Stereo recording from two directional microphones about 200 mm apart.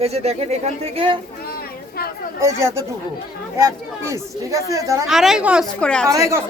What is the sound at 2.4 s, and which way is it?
Speech, 15° right (ahead or behind).